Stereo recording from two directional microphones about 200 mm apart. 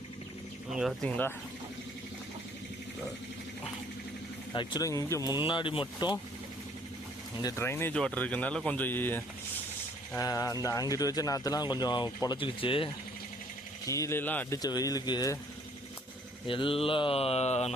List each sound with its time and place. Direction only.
0.7 s speech: centre (ahead or behind)
4.5 s speech: 20° left (ahead or behind)
7.4 s speech: 15° left (ahead or behind)
13.8 s speech: 15° left (ahead or behind)
16.5 s speech: 25° left (ahead or behind)